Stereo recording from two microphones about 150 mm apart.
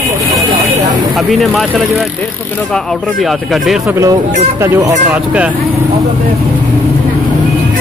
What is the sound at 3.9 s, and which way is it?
Speech, 20° right (ahead or behind).